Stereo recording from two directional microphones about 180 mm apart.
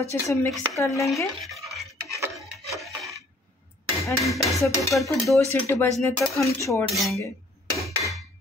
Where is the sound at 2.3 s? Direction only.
Centre (ahead or behind).